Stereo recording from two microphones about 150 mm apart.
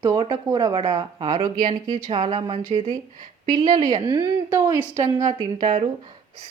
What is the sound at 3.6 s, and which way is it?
A woman's voice, 25° right (ahead or behind).